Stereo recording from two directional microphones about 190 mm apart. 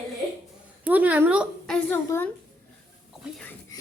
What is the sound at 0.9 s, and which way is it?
A woman's voice, 10° right (ahead or behind).